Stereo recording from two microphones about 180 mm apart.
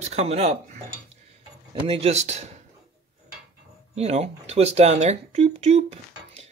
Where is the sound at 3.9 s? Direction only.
35° right (ahead or behind).